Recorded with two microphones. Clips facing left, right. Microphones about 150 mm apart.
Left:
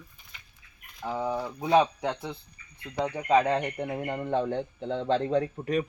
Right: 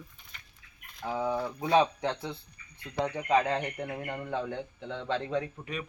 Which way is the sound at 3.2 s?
15° left (ahead or behind).